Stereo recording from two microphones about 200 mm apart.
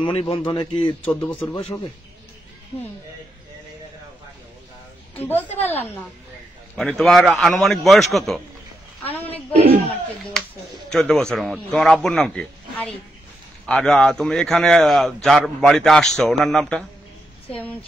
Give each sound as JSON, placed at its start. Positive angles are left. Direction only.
{"t": 0.0, "sound": "speech", "side_deg": 30}
{"t": 1.0, "sound": "a woman's voice", "side_deg": 10}
{"t": 5.1, "sound": "a woman's voice", "side_deg": 10}
{"t": 6.8, "sound": "a man's voice", "side_deg": 0}
{"t": 9.5, "sound": "a man's voice", "side_deg": -30}
{"t": 10.9, "sound": "a man's voice", "side_deg": 0}